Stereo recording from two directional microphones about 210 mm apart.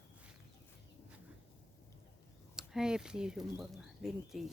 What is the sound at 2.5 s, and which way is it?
Speech, 5° right (ahead or behind).